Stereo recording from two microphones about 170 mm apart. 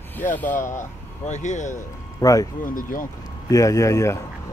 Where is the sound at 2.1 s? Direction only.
20° left (ahead or behind).